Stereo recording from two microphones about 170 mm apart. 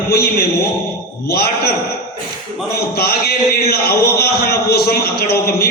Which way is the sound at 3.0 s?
65° left (ahead or behind).